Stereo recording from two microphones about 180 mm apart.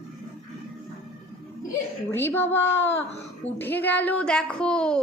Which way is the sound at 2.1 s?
10° left (ahead or behind).